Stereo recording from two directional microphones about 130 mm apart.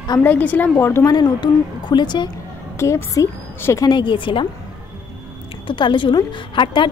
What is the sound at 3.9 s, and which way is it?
Speech, 40° left (ahead or behind).